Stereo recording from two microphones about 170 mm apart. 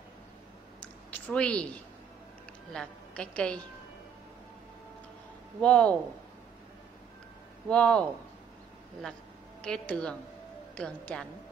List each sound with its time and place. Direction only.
1.1 s speech: 5° left (ahead or behind)
2.7 s a woman's voice: 5° left (ahead or behind)
5.6 s a woman's voice: 5° left (ahead or behind)
7.7 s a woman's voice: 5° left (ahead or behind)
9.6 s a woman's voice: 5° left (ahead or behind)